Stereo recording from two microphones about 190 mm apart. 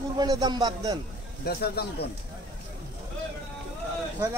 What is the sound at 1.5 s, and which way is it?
Speech, 55° left (ahead or behind).